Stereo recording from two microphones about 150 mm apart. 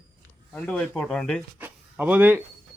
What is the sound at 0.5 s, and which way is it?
Speech, 5° left (ahead or behind).